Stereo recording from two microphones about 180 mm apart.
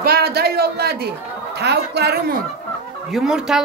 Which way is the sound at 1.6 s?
65° right (ahead or behind).